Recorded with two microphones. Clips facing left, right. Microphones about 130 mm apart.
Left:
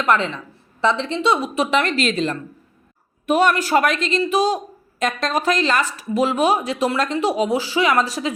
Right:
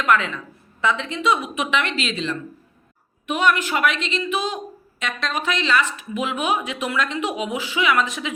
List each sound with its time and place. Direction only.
0.0 s a woman's voice: 35° left (ahead or behind)